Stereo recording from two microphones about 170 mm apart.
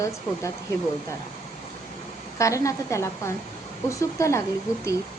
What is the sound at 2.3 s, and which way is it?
A woman's voice, 20° left (ahead or behind).